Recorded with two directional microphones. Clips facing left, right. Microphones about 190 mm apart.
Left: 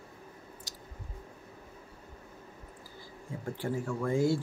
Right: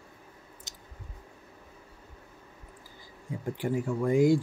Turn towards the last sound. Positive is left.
turn(degrees=-15)  # may be behind; listen again after turning